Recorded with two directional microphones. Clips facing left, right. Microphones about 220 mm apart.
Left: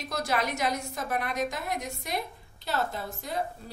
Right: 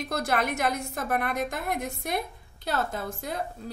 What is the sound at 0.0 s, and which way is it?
A woman's voice, 55° right (ahead or behind).